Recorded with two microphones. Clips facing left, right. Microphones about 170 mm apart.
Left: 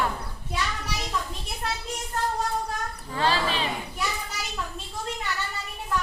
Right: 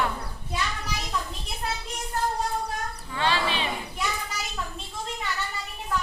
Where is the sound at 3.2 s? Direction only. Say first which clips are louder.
Left 1 dB; 40° left (ahead or behind).